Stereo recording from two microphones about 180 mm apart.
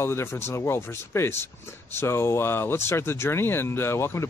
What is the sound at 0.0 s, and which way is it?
Speech, 15° left (ahead or behind).